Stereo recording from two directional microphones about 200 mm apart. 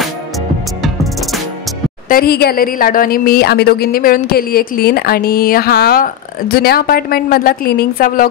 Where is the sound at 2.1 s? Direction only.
50° left (ahead or behind).